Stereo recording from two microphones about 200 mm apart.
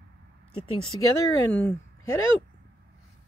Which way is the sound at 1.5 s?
5° left (ahead or behind).